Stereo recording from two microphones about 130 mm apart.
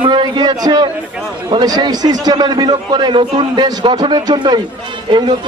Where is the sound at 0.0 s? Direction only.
35° right (ahead or behind).